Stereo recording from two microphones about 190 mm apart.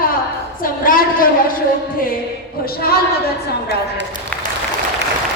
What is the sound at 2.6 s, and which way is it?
Speech, 55° left (ahead or behind).